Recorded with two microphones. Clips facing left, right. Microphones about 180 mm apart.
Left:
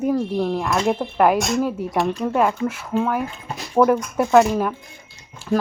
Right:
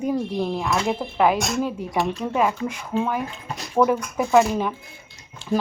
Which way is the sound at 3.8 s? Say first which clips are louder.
Left 3 dB; centre (ahead or behind).